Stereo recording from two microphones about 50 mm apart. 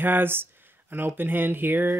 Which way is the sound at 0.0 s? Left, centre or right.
Right.